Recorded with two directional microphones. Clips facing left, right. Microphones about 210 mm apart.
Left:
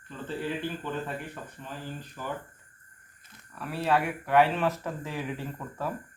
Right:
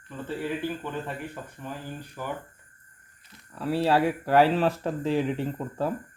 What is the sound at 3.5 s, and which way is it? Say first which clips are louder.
Speech: right 4 dB; 30° right (ahead or behind).